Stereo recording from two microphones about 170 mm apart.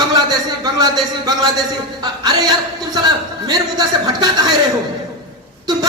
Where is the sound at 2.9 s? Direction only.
25° right (ahead or behind).